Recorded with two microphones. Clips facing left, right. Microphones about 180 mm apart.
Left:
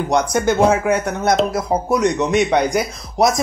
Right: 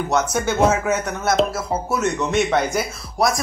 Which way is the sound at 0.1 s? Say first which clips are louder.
Left 5 dB; 15° left (ahead or behind).